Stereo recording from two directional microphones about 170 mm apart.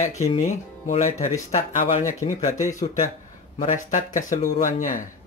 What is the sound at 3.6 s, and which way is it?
Speech, 50° left (ahead or behind).